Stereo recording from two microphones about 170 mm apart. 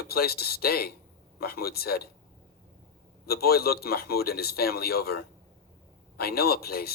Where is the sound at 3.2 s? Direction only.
65° left (ahead or behind).